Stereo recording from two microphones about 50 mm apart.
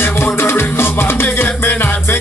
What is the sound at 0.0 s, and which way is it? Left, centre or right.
Music, left.